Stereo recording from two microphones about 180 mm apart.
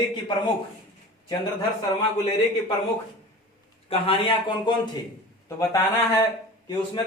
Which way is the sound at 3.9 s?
30° left (ahead or behind).